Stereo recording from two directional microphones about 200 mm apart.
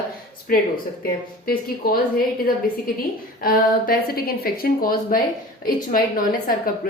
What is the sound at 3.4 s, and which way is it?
A woman's voice, 50° left (ahead or behind).